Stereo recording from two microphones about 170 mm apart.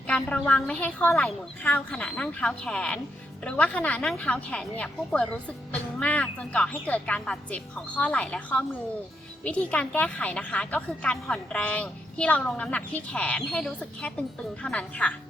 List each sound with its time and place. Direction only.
0.1 s a woman's voice: 5° left (ahead or behind)